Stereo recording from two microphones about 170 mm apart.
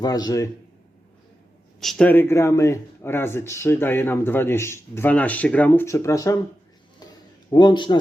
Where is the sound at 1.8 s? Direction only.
5° left (ahead or behind).